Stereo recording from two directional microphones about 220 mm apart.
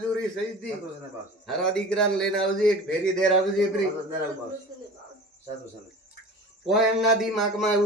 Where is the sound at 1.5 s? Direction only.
5° left (ahead or behind).